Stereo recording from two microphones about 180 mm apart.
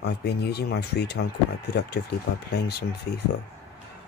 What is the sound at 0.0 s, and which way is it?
Speech, 65° left (ahead or behind).